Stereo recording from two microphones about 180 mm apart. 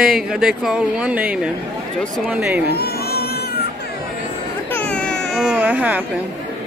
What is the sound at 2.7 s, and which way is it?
Cat, 65° left (ahead or behind).